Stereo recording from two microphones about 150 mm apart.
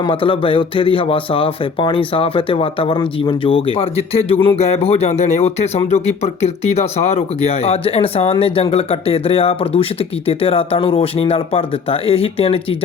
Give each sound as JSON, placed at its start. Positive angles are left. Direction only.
{"t": 0.0, "sound": "speech", "side_deg": 35}